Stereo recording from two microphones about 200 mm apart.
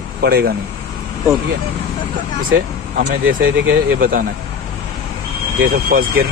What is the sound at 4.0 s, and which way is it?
Speech, 45° right (ahead or behind).